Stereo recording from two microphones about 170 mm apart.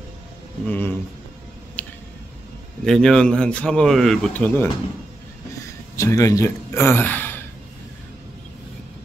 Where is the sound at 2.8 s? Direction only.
5° left (ahead or behind).